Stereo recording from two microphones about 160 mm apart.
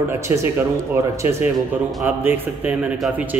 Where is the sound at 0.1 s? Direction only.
15° right (ahead or behind).